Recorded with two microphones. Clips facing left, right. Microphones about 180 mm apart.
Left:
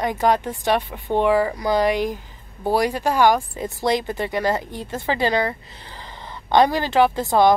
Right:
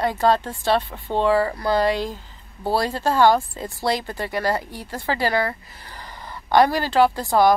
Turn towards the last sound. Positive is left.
turn(degrees=20)  # may be behind; listen again after turning